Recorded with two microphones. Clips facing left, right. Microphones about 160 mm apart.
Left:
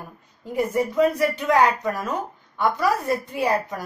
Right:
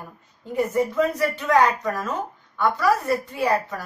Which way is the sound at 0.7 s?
15° left (ahead or behind).